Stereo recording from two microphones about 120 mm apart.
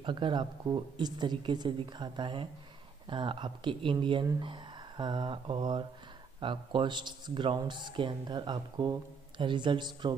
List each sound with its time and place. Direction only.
0.0 s speech: 40° right (ahead or behind)